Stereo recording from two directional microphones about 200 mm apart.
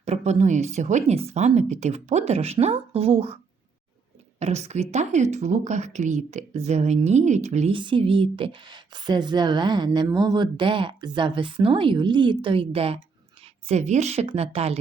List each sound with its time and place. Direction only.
0.0 s speech: 30° right (ahead or behind)
4.4 s speech: 35° right (ahead or behind)